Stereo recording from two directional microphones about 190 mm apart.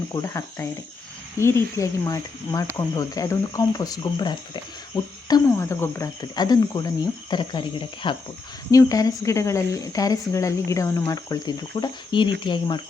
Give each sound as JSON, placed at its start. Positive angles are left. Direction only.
{"t": 0.1, "sound": "speech", "side_deg": 15}